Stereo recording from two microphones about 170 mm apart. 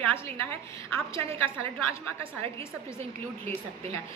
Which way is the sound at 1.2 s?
35° right (ahead or behind).